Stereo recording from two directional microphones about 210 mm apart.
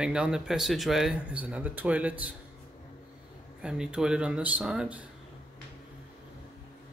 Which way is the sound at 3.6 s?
5° right (ahead or behind).